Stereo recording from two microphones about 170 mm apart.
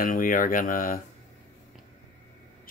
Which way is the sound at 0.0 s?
55° left (ahead or behind).